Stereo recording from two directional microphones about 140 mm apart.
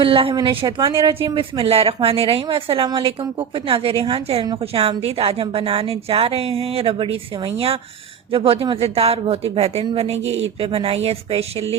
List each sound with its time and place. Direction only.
0.0 s a woman's voice: 40° right (ahead or behind)